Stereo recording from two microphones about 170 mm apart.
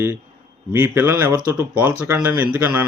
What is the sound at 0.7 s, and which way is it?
Speech, 15° right (ahead or behind).